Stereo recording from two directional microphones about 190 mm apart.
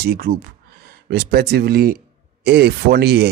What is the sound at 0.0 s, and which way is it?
Speech, 55° right (ahead or behind).